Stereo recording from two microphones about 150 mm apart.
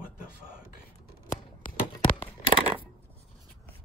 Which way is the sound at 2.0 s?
35° left (ahead or behind).